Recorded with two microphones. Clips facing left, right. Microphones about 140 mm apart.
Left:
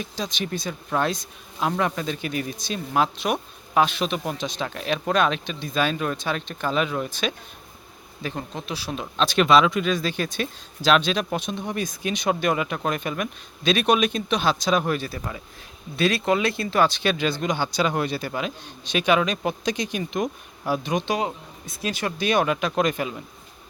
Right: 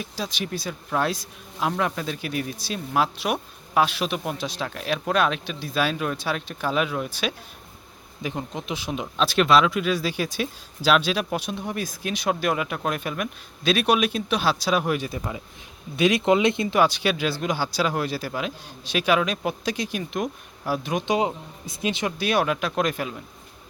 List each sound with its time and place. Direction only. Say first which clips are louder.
0.0 s speech: left 1 dB; 5° right (ahead or behind)
9.1 s speech: left 1 dB; 5° right (ahead or behind)
21.0 s speech: right 2 dB; 20° right (ahead or behind)
22.2 s speech: left 2 dB; 5° right (ahead or behind)